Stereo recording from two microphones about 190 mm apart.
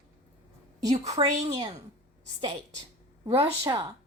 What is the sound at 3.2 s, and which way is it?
Speech, 30° right (ahead or behind).